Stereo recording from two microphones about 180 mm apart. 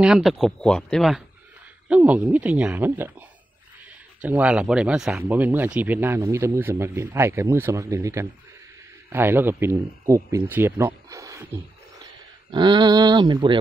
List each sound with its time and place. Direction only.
0.0 s speech: centre (ahead or behind); by 13.6 s 25° right (ahead or behind)